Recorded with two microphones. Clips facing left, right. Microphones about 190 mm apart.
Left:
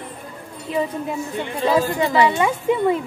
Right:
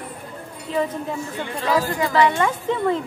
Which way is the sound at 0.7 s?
15° left (ahead or behind).